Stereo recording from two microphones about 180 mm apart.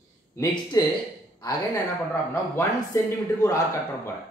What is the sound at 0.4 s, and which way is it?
Speech, 25° left (ahead or behind).